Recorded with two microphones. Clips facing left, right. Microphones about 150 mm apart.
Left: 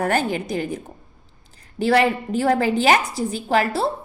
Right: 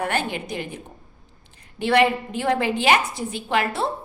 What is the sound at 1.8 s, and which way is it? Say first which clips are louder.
A woman's voice: left 1 dB; 35° left (ahead or behind).